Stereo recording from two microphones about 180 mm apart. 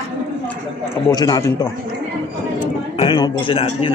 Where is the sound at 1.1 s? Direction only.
20° left (ahead or behind).